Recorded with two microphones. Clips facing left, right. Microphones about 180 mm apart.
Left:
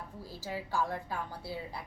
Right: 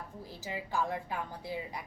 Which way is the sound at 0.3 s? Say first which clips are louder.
Left 1 dB; 15° right (ahead or behind).